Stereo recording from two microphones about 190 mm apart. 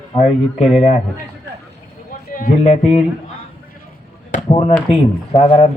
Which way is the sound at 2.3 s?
45° left (ahead or behind).